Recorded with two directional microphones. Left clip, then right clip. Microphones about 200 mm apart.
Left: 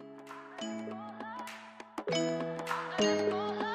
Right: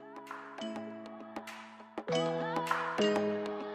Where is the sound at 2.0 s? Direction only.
Centre (ahead or behind).